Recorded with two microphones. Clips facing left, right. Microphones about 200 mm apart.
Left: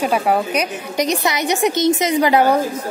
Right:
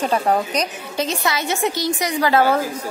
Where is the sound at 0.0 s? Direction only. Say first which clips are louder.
Left 2 dB; 10° left (ahead or behind).